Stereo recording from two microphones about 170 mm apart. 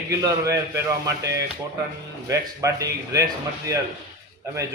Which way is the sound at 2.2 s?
20° right (ahead or behind).